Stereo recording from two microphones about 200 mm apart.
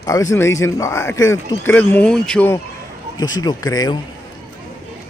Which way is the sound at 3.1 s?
20° left (ahead or behind).